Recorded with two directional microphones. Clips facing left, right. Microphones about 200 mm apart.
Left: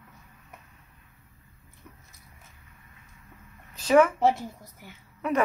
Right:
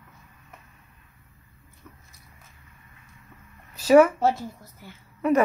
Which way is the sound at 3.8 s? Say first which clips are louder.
Right 4 dB; 5° right (ahead or behind).